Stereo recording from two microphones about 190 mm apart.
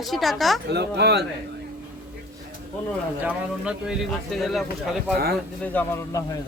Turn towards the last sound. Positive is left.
turn(degrees=15)  # may be behind; listen again after turning